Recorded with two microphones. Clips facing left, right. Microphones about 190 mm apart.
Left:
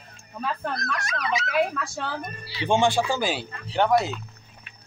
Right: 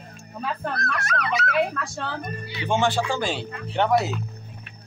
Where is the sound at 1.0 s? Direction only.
60° right (ahead or behind).